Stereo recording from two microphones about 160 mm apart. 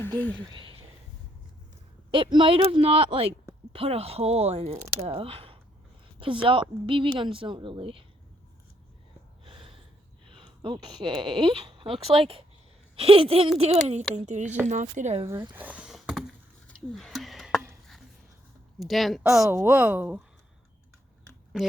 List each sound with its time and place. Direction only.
0.3 s speech: 30° right (ahead or behind)
2.0 s speech: 30° right (ahead or behind)
9.4 s gasp: 35° right (ahead or behind)
10.3 s speech: 30° right (ahead or behind); by 15.2 s 50° right (ahead or behind)
15.3 s a sound: 15° right (ahead or behind)
18.8 s a woman's voice: centre (ahead or behind)
19.5 s speech: 15° right (ahead or behind)